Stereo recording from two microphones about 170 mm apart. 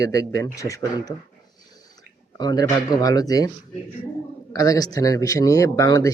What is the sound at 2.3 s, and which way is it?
Speech, 25° left (ahead or behind).